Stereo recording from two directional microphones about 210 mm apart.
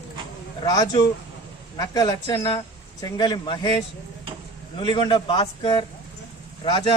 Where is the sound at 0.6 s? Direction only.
15° left (ahead or behind).